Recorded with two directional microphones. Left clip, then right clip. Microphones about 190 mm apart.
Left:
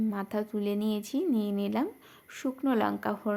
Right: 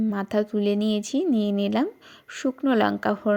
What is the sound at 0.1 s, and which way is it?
Speech, 25° right (ahead or behind).